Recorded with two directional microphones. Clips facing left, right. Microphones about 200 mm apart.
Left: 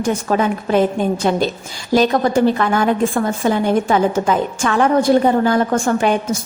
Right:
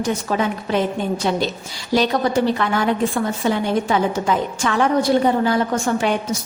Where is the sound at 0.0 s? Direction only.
50° left (ahead or behind).